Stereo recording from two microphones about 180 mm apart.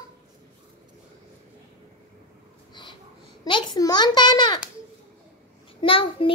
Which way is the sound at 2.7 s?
25° left (ahead or behind).